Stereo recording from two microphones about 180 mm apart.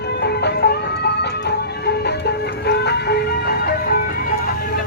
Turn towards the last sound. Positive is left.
turn(degrees=55)  # may be behind; listen again after turning